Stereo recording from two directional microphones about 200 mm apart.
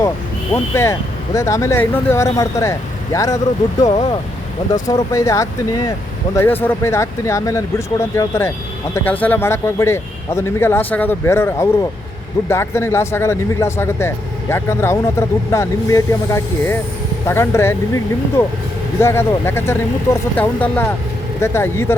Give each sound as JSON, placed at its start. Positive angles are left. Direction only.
{"t": 0.5, "sound": "speech", "side_deg": 15}